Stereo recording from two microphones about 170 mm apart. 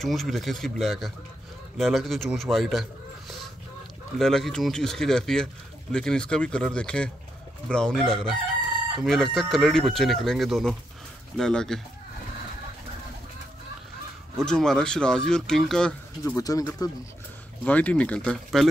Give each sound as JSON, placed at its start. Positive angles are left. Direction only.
{"t": 0.0, "sound": "speech", "side_deg": 0}
{"t": 14.4, "sound": "speech", "side_deg": 5}
{"t": 16.3, "sound": "speech", "side_deg": 20}
{"t": 17.6, "sound": "speech", "side_deg": 10}